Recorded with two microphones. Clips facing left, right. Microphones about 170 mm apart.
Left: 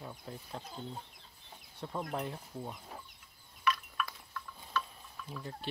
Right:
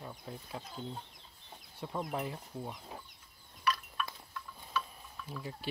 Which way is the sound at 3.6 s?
25° right (ahead or behind).